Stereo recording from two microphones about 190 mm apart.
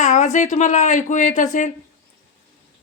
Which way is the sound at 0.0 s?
40° left (ahead or behind).